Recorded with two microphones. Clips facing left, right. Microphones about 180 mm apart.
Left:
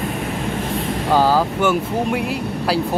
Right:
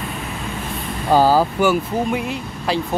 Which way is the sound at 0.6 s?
80° left.